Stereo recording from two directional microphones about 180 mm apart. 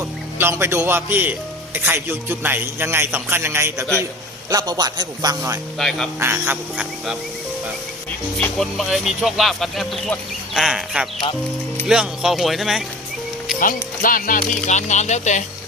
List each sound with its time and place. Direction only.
0.3 s a man's voice: 15° right (ahead or behind)
5.8 s speech: centre (ahead or behind)
6.1 s a man's voice: 10° right (ahead or behind)
8.4 s speech: centre (ahead or behind)
14.0 s speech: 50° left (ahead or behind)